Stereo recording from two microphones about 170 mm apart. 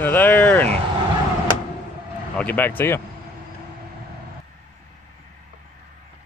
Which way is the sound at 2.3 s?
10° left (ahead or behind).